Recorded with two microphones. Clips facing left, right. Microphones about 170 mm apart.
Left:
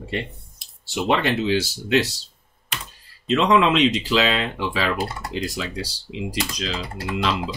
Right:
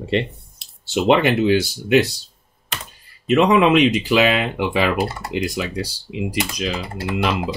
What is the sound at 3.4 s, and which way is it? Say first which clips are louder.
Speech: right 3 dB; 10° right (ahead or behind).